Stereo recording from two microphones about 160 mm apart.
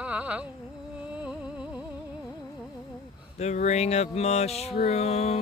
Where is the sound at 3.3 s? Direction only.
45° left (ahead or behind).